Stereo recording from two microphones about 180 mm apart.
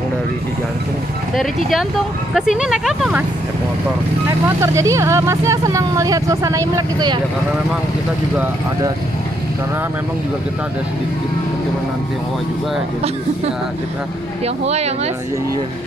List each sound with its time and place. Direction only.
1.3 s speech: centre (ahead or behind)
4.6 s speech: 15° right (ahead or behind)